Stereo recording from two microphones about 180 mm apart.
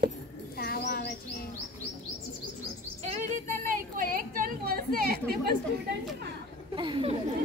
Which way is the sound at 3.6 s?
50° right (ahead or behind).